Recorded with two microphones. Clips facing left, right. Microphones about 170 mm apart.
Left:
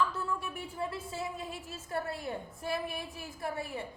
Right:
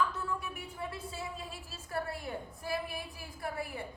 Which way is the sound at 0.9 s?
25° left (ahead or behind).